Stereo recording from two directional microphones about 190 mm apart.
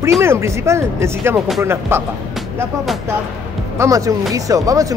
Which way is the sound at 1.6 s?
15° right (ahead or behind).